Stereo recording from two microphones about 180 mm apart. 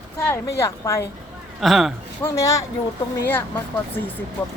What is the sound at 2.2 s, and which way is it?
Speech, 15° left (ahead or behind).